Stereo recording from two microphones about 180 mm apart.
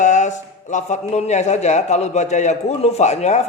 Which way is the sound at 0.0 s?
40° left (ahead or behind).